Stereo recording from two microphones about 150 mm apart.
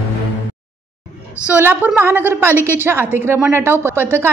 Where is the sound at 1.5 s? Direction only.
15° right (ahead or behind).